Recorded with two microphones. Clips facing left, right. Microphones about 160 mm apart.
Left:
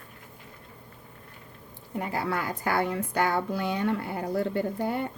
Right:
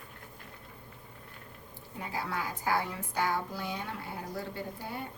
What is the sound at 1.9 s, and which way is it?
A woman's voice, 65° left (ahead or behind).